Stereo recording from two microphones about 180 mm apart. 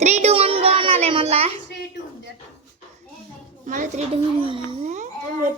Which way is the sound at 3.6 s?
45° right (ahead or behind).